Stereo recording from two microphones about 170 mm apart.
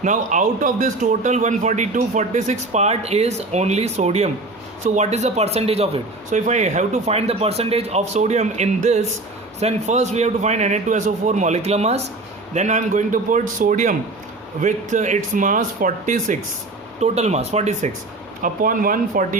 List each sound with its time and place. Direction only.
0.0 s a man's voice: 45° right (ahead or behind)
18.4 s a man's voice: 55° right (ahead or behind)